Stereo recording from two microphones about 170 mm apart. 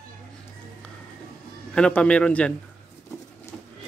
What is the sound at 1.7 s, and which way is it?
Speech, 5° left (ahead or behind).